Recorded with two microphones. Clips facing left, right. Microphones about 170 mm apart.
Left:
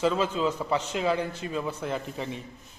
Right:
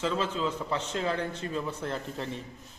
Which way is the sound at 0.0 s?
15° left (ahead or behind).